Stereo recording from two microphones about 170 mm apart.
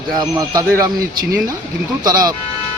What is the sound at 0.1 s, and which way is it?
Speech, 25° right (ahead or behind).